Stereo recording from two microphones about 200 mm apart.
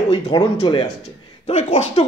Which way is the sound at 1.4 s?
35° left (ahead or behind).